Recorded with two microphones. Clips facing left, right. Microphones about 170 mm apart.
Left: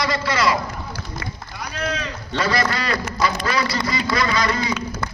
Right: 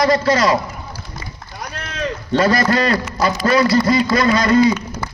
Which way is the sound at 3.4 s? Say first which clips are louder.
Right 9 dB; 50° right (ahead or behind).